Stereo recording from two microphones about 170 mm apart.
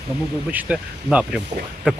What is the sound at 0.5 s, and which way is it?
Speech, 5° right (ahead or behind).